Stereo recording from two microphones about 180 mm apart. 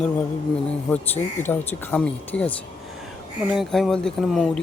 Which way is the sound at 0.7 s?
10° left (ahead or behind).